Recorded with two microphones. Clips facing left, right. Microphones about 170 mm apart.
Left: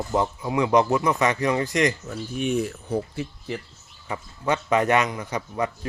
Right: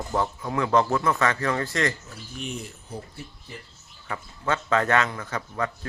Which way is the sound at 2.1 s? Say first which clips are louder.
Left 10 dB; 60° left (ahead or behind).